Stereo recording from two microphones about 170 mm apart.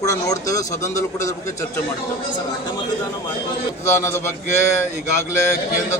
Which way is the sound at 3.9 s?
15° left (ahead or behind).